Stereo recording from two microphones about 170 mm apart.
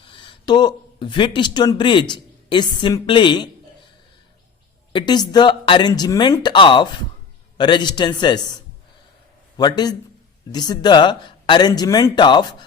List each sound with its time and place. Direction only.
0.0 s speech: 30° left (ahead or behind)
4.9 s speech: 25° left (ahead or behind)